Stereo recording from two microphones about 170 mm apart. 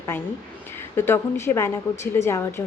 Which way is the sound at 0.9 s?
15° left (ahead or behind).